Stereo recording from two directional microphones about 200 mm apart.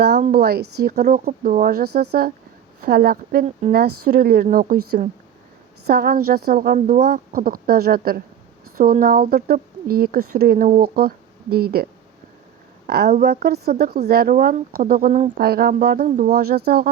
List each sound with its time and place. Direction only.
0.2 s speech: 50° right (ahead or behind)
5.9 s speech: 50° right (ahead or behind)
12.9 s speech: 50° right (ahead or behind)